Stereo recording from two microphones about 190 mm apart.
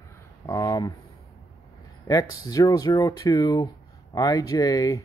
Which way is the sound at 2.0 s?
20° left (ahead or behind).